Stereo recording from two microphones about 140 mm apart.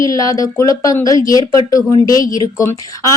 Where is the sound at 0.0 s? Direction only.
25° left (ahead or behind).